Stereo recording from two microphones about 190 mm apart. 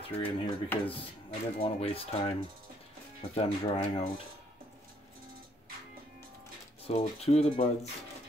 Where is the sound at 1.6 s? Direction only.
30° left (ahead or behind).